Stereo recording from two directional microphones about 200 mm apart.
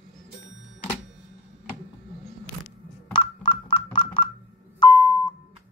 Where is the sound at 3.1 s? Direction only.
25° left (ahead or behind).